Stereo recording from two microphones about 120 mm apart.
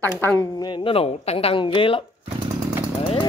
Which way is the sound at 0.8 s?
50° left (ahead or behind).